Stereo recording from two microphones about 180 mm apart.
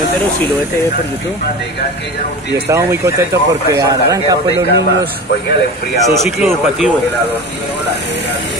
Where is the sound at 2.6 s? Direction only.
15° right (ahead or behind).